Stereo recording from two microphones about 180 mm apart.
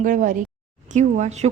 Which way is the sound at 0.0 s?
45° right (ahead or behind).